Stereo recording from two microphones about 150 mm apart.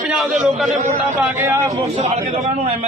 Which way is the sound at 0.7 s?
55° right (ahead or behind).